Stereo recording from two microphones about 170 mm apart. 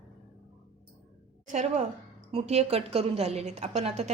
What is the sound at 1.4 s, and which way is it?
A woman's voice, 45° right (ahead or behind).